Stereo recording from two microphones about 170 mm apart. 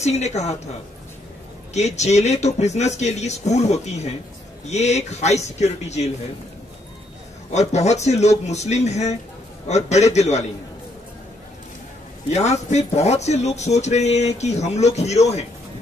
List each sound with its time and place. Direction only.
0.0 s speech: 40° left (ahead or behind)
1.7 s speech: 40° left (ahead or behind)
7.5 s speech: 40° left (ahead or behind)
12.3 s speech: 40° left (ahead or behind)